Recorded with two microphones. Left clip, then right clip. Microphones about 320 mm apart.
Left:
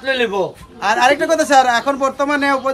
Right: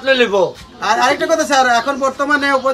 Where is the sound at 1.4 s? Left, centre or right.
Left.